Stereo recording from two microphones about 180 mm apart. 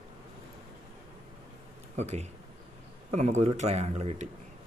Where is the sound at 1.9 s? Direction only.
40° right (ahead or behind).